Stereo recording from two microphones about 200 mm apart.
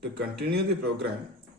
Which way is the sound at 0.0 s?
55° right (ahead or behind).